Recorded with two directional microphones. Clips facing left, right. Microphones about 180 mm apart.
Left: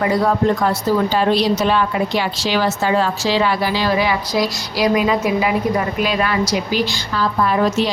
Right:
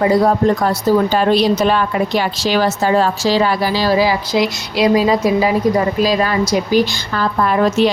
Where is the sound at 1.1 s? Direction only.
50° right (ahead or behind).